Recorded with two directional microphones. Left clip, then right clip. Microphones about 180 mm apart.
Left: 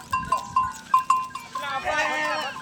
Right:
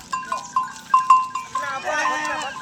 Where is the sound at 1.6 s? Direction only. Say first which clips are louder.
Right 1 dB; 60° right (ahead or behind).